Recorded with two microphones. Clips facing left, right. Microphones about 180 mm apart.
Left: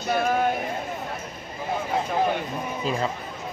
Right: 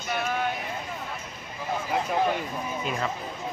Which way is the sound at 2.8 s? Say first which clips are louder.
Left 5 dB; 30° left (ahead or behind).